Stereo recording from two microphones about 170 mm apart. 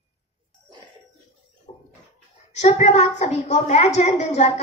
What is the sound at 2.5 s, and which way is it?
A woman's voice, 40° left (ahead or behind).